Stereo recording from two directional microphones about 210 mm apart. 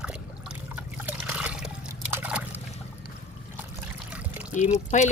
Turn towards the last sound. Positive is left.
turn(degrees=35)  # may be behind; listen again after turning